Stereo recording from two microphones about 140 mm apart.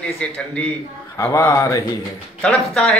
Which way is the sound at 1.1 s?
20° left (ahead or behind).